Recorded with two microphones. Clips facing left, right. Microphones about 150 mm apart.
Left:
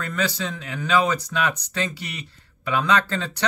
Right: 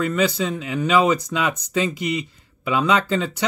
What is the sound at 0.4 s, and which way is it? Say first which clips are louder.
A man's voice: right 6 dB; 10° right (ahead or behind).